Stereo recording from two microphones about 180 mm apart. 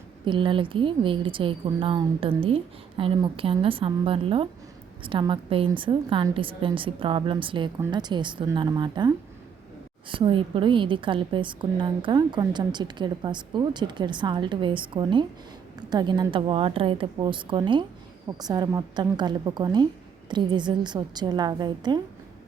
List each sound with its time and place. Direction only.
0.3 s a woman's voice: 25° right (ahead or behind)